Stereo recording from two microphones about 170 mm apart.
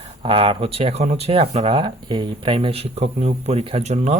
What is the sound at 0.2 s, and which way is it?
Speech, 30° right (ahead or behind).